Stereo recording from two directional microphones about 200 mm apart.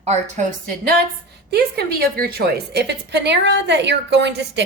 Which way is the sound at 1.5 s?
50° right (ahead or behind).